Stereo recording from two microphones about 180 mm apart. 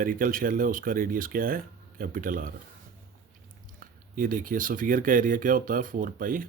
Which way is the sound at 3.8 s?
50° right (ahead or behind).